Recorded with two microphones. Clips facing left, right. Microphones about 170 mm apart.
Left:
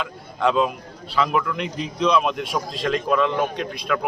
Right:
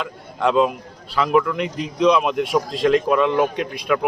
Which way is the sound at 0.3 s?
10° right (ahead or behind).